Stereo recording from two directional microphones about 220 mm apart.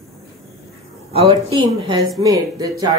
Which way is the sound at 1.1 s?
25° right (ahead or behind).